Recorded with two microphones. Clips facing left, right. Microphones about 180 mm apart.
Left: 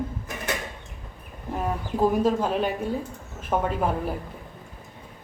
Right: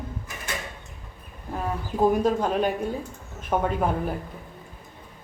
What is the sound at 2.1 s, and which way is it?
Speech, centre (ahead or behind).